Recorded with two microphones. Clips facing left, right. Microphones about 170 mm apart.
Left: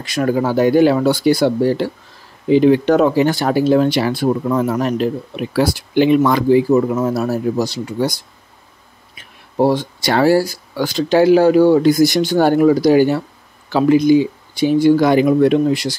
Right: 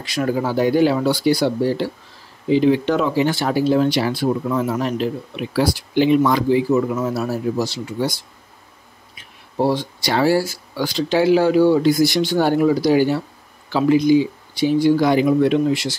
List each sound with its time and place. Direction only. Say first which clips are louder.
0.0 s speech: left 4 dB; 50° left (ahead or behind)
3.5 s speech: left 3 dB; 55° left (ahead or behind)
6.7 s speech: left 4 dB; 40° left (ahead or behind)
9.6 s speech: left 4 dB; 50° left (ahead or behind)